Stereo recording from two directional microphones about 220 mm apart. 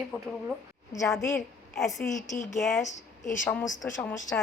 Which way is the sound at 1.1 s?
Centre (ahead or behind).